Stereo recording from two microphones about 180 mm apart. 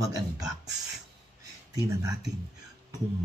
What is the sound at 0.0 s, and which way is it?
Speech, 20° right (ahead or behind).